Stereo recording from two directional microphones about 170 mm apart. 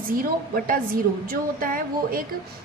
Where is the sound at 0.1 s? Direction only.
55° right (ahead or behind).